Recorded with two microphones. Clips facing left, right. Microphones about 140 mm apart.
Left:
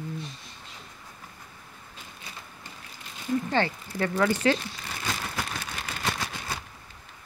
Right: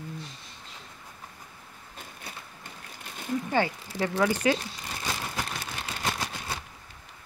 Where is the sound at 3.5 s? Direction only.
10° right (ahead or behind).